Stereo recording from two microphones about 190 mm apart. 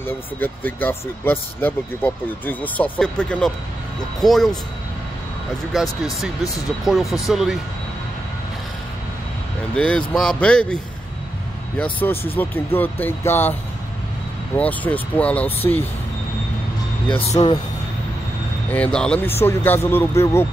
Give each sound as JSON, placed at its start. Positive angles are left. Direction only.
{"t": 0.0, "sound": "speech", "side_deg": 10}
{"t": 5.7, "sound": "speech", "side_deg": 0}
{"t": 9.8, "sound": "speech", "side_deg": 5}
{"t": 11.8, "sound": "speech", "side_deg": 10}
{"t": 17.1, "sound": "speech", "side_deg": 30}
{"t": 18.7, "sound": "speech", "side_deg": 5}